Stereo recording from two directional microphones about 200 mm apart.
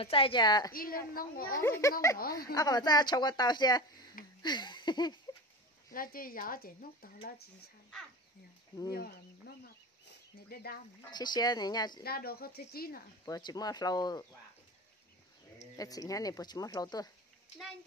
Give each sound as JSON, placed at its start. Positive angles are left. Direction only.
{"t": 0.0, "sound": "speech", "side_deg": 25}
{"t": 0.7, "sound": "speech", "side_deg": 45}
{"t": 1.6, "sound": "speech", "side_deg": 15}
{"t": 2.1, "sound": "speech", "side_deg": 50}
{"t": 2.5, "sound": "speech", "side_deg": 20}
{"t": 4.4, "sound": "a sound", "side_deg": 20}
{"t": 5.9, "sound": "speech", "side_deg": 45}
{"t": 10.5, "sound": "speech", "side_deg": 50}
{"t": 11.1, "sound": "speech", "side_deg": 20}
{"t": 12.0, "sound": "speech", "side_deg": 50}
{"t": 13.2, "sound": "speech", "side_deg": 20}
{"t": 15.8, "sound": "speech", "side_deg": 15}